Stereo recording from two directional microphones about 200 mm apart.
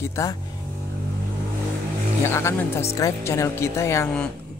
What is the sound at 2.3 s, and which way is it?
Speech, 15° left (ahead or behind).